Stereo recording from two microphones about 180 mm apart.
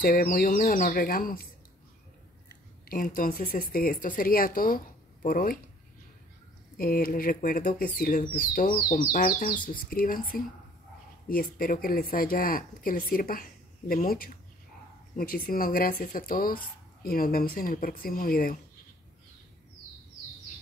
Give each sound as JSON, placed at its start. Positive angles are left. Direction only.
{"t": 0.0, "sound": "speech", "side_deg": 55}
{"t": 2.9, "sound": "speech", "side_deg": 50}
{"t": 6.8, "sound": "speech", "side_deg": 50}